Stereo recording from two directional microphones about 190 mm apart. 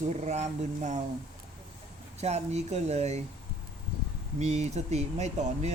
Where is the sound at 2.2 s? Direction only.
35° right (ahead or behind).